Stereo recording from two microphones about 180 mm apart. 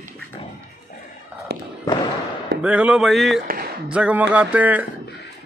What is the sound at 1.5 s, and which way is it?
Fireworks, 65° right (ahead or behind).